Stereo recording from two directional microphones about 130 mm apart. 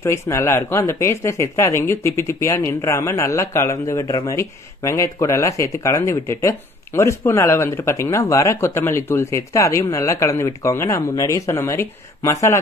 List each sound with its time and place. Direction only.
0.0 s speech: 20° left (ahead or behind)